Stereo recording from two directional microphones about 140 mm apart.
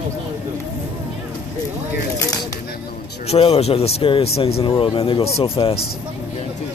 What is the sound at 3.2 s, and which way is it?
Speech, 45° left (ahead or behind).